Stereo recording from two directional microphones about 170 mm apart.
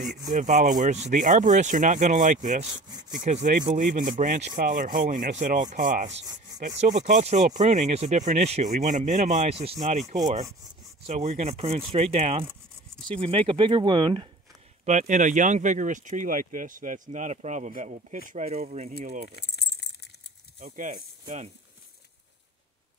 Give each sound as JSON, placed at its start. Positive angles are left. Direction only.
{"t": 0.3, "sound": "speech", "side_deg": -45}
{"t": 14.9, "sound": "speech", "side_deg": -45}
{"t": 19.3, "sound": "keys jangling", "side_deg": 80}
{"t": 20.6, "sound": "speech", "side_deg": -50}